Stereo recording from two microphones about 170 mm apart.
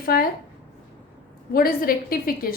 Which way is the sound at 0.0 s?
60° left (ahead or behind).